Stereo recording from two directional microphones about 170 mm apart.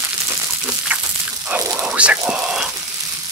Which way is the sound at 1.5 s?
10° right (ahead or behind).